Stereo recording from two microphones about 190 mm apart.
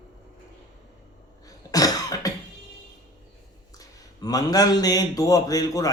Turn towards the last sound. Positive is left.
turn(degrees=20)  # may be behind; listen again after turning